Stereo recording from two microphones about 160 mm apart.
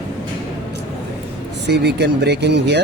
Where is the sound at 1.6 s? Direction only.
90° right.